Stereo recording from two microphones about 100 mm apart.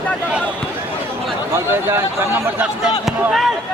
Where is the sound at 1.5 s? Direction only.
25° right (ahead or behind).